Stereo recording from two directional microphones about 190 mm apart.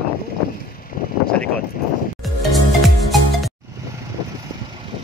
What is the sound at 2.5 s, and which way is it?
Music, centre (ahead or behind).